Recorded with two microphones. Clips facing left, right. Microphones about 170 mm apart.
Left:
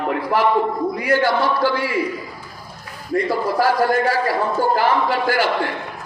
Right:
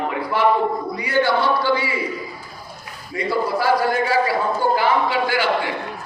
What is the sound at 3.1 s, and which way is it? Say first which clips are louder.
A man's voice: left 3 dB; 45° left (ahead or behind).